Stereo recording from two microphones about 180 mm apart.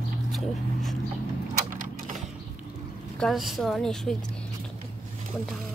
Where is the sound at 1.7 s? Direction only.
45° right (ahead or behind).